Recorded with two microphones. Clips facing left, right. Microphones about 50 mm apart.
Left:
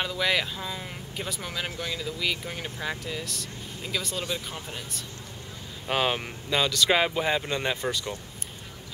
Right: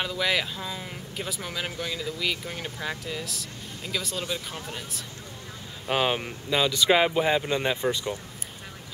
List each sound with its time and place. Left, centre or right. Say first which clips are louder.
0.0 s speech: even; centre